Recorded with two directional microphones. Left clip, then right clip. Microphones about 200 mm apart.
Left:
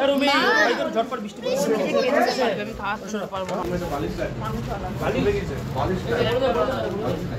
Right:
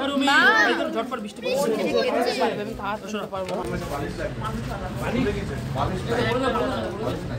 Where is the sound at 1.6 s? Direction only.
40° right (ahead or behind).